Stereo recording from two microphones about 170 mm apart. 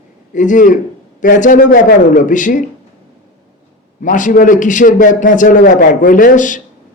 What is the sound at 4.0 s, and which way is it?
A man's voice, 50° left (ahead or behind).